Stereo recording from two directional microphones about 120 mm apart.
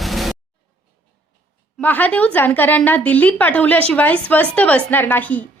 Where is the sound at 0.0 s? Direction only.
Centre (ahead or behind).